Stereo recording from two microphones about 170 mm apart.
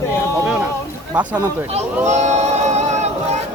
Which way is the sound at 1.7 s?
40° right (ahead or behind).